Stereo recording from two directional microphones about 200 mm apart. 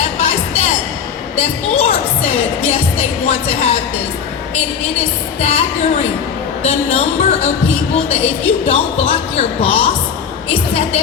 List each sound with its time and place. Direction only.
0.0 s music: 30° left (ahead or behind)
3.2 s a woman's voice: 35° left (ahead or behind)
5.4 s a woman's voice: 35° left (ahead or behind)